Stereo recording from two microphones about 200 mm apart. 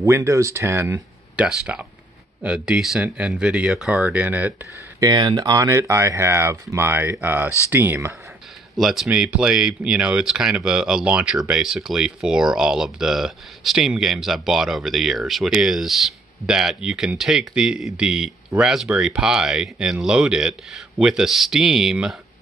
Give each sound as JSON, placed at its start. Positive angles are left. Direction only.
{"t": 0.0, "sound": "speech", "side_deg": -15}
{"t": 5.0, "sound": "speech", "side_deg": -20}